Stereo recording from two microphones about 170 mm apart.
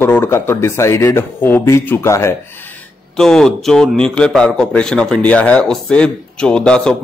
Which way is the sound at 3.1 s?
5° left (ahead or behind).